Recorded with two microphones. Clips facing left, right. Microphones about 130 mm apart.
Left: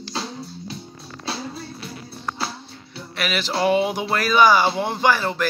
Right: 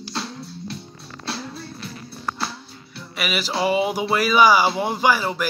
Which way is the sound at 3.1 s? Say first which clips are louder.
Left 1 dB; 10° right (ahead or behind).